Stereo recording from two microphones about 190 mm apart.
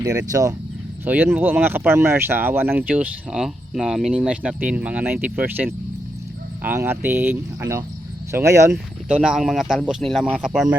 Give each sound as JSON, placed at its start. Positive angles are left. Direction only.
{"t": 0.3, "sound": "speech", "side_deg": -20}